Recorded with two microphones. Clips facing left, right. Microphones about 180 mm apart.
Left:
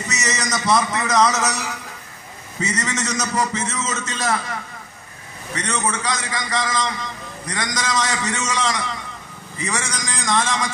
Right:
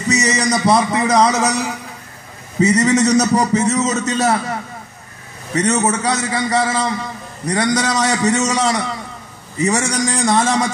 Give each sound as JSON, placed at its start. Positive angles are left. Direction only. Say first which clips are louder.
{"t": 0.1, "sound": "a man's voice", "louder": "right 9 dB", "side_deg": -35}